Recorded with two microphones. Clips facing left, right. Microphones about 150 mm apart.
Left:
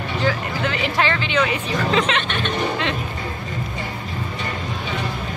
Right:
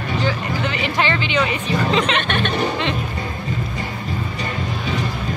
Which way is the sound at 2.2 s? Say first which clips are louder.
Right 3 dB; 60° right (ahead or behind).